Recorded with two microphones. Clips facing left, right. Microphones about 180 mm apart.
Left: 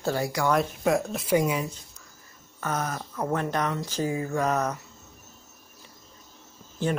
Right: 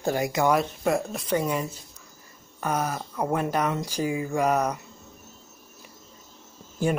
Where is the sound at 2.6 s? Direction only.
10° right (ahead or behind).